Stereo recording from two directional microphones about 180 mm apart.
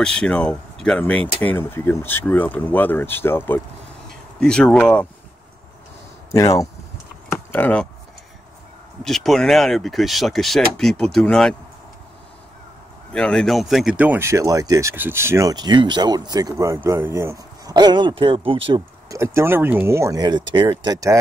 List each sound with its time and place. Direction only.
0.0 s speech: 5° left (ahead or behind)
6.3 s speech: 15° left (ahead or behind)
9.0 s speech: centre (ahead or behind)
13.1 s speech: 5° left (ahead or behind); by 18.8 s 30° right (ahead or behind)
19.0 s speech: 15° right (ahead or behind)